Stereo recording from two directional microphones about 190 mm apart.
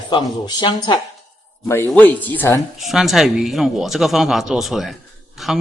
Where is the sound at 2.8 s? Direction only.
Centre (ahead or behind).